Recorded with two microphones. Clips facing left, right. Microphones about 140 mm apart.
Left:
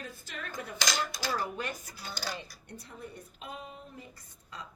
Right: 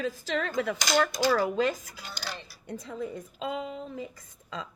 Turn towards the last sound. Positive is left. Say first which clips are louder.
# right 7 dB
turn(degrees=-90)